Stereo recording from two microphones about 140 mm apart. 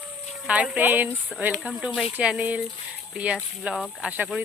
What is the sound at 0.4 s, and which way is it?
Speech, 10° right (ahead or behind).